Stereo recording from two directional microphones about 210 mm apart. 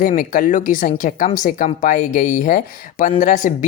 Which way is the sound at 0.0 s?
40° left (ahead or behind).